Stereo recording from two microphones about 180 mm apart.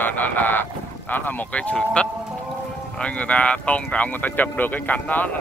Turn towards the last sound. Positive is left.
turn(degrees=10)  # may be behind; listen again after turning